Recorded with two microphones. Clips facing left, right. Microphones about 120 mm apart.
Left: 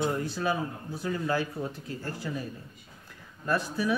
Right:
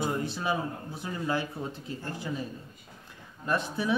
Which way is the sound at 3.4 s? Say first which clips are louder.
Left 1 dB; 20° right (ahead or behind).